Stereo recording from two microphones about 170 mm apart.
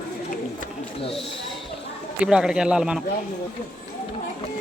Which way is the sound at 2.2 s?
5° right (ahead or behind).